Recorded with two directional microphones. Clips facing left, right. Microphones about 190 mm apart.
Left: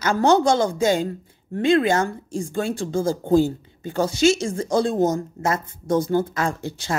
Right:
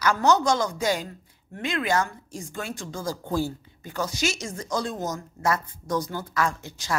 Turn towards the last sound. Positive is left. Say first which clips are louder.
# left 4 dB
turn(degrees=30)  # may be behind; listen again after turning